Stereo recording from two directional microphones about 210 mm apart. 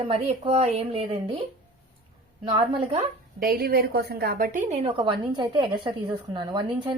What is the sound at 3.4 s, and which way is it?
A woman's voice, 45° right (ahead or behind).